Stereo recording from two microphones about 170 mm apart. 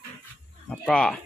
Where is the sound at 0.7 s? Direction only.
5° left (ahead or behind).